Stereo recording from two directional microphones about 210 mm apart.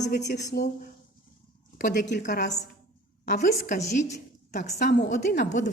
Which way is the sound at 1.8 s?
50° left (ahead or behind).